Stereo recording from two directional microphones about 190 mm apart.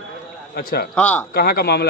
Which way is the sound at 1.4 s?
55° left (ahead or behind).